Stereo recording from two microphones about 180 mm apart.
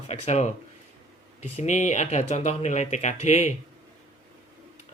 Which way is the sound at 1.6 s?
40° left (ahead or behind).